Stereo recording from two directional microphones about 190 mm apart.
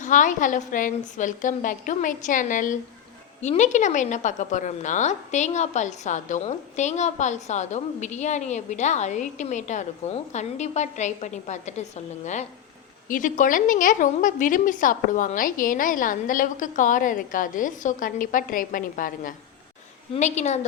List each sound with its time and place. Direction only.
0.0 s a woman's voice: 40° left (ahead or behind)